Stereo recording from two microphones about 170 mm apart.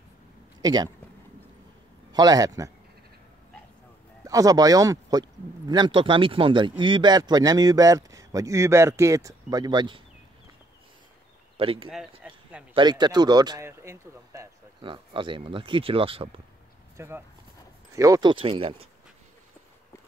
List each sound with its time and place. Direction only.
0.6 s speech: 25° right (ahead or behind)
2.1 s speech: 20° right (ahead or behind)
4.2 s speech: 20° right (ahead or behind)
11.5 s speech: 35° right (ahead or behind)
12.2 s a sound: 5° right (ahead or behind)
12.7 s speech: 25° right (ahead or behind)
14.8 s speech: 30° right (ahead or behind)
16.9 s speech: 15° right (ahead or behind); by 18.8 s 30° right (ahead or behind)